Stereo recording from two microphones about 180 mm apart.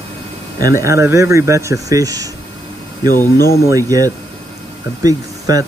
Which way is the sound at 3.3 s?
55° left (ahead or behind).